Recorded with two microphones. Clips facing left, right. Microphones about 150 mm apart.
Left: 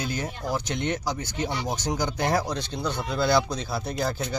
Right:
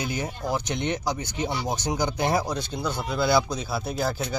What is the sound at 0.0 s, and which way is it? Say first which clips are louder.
Speech: right 1 dB; 15° right (ahead or behind).